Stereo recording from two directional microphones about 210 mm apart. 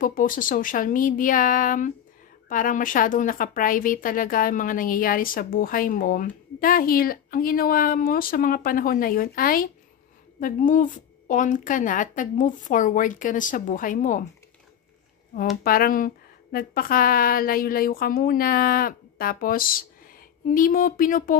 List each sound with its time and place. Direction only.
0.0 s a woman's voice: 40° left (ahead or behind)
15.6 s a woman's voice: 45° left (ahead or behind)